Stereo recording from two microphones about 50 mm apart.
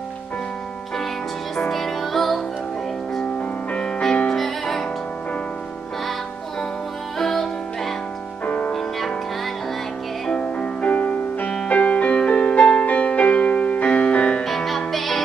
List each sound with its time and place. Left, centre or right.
1.6 s music: centre
3.3 s music: centre
4.3 s music: centre
7.2 s music: centre
8.5 s music: left
10.6 s music: left
14.4 s music: centre